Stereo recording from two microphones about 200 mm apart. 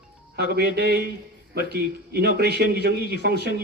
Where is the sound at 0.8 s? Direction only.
55° right (ahead or behind).